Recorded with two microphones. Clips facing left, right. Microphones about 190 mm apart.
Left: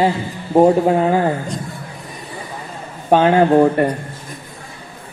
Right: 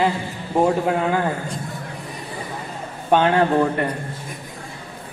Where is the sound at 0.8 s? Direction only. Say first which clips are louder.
Left 5 dB; 30° left (ahead or behind).